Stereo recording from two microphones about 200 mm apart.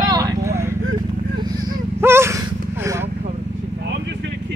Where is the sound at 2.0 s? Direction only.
10° right (ahead or behind).